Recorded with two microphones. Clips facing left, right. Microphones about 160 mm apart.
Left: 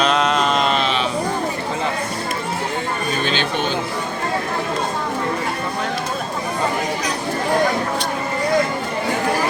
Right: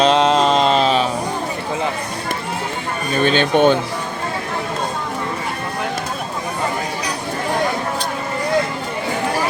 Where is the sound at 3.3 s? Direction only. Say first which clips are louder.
Right 12 dB; 50° right (ahead or behind).